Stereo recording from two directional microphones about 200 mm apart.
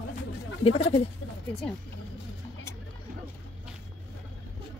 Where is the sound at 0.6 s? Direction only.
30° left (ahead or behind).